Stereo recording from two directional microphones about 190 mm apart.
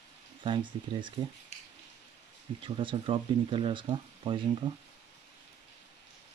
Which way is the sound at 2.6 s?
25° right (ahead or behind).